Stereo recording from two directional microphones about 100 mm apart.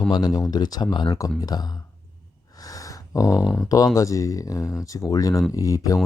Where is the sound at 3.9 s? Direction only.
35° left (ahead or behind).